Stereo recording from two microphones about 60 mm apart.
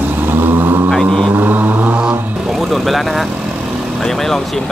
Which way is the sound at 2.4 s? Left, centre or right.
Centre.